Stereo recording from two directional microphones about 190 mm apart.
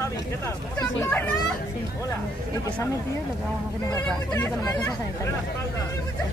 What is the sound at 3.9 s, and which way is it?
Speech, 15° left (ahead or behind).